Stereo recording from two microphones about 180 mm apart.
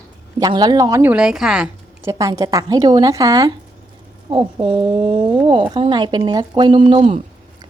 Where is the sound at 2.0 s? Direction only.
20° right (ahead or behind).